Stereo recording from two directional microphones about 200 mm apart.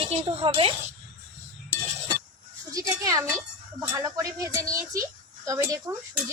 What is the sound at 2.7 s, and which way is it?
A woman's voice, 15° right (ahead or behind).